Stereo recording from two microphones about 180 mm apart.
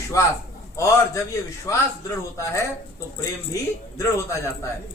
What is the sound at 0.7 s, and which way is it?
Speech, 15° left (ahead or behind).